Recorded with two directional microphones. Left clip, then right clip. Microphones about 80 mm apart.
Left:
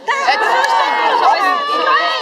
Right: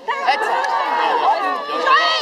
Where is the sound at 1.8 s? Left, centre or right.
Right.